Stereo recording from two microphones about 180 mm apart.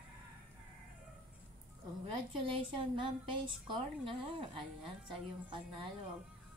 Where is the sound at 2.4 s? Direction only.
30° right (ahead or behind).